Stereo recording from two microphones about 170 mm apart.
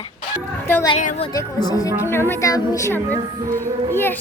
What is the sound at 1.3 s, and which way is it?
Speech, 20° left (ahead or behind).